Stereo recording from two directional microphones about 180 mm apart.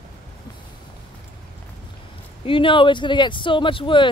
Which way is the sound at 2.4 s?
30° left (ahead or behind).